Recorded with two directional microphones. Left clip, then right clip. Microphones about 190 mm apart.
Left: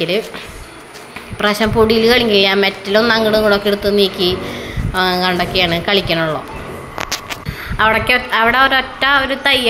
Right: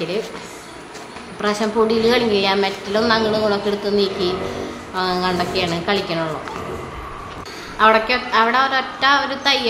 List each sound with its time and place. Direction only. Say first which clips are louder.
1.4 s a woman's voice: left 5 dB; 20° left (ahead or behind)
7.7 s a woman's voice: left 2 dB; 25° left (ahead or behind)